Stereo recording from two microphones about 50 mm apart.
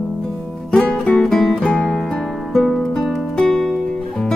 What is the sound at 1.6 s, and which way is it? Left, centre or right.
Music, left.